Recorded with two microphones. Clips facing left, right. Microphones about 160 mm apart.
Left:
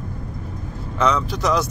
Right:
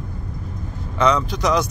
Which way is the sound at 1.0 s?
5° left (ahead or behind).